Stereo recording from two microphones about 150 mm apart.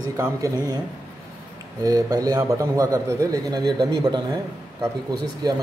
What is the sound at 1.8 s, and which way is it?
A man's voice, 25° right (ahead or behind).